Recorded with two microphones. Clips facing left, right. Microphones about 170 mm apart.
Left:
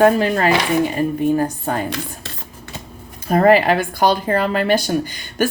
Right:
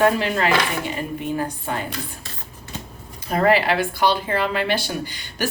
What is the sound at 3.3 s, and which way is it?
Speech, 45° left (ahead or behind).